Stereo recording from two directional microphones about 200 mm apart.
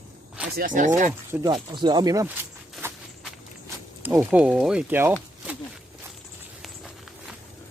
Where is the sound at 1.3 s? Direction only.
15° right (ahead or behind).